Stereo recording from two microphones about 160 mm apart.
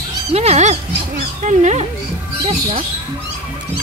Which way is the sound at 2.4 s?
35° right (ahead or behind).